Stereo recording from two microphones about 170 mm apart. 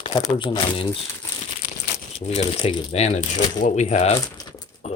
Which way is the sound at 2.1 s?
35° left (ahead or behind).